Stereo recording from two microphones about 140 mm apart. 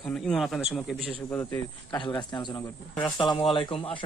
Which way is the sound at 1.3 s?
20° left (ahead or behind).